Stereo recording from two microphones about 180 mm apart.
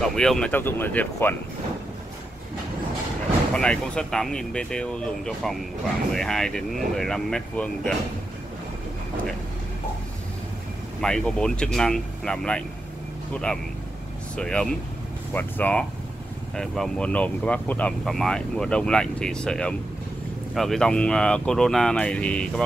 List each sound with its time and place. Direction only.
0.0 s speech: centre (ahead or behind)
3.5 s speech: 5° left (ahead or behind)
11.0 s speech: 5° left (ahead or behind)